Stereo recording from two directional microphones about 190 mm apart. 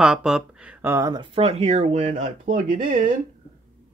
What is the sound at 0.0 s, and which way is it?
Speech, 5° right (ahead or behind).